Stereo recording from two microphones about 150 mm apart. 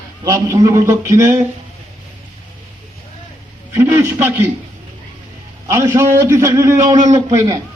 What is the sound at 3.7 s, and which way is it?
Speech, 15° right (ahead or behind).